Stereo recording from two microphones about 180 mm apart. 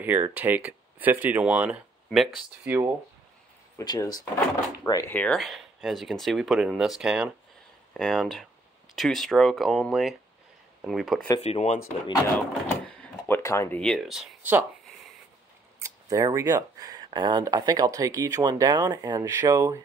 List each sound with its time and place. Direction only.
0.0 s speech: 10° right (ahead or behind)
3.7 s speech: 20° left (ahead or behind); by 11.2 s centre (ahead or behind)
11.4 s speech: 40° left (ahead or behind)
12.4 s a sound: 10° left (ahead or behind)
13.4 s speech: 15° left (ahead or behind)
13.7 s speech: 5° left (ahead or behind)
15.8 s speech: 20° right (ahead or behind)